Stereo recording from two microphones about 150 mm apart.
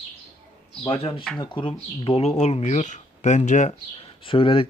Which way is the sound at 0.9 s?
40° left (ahead or behind).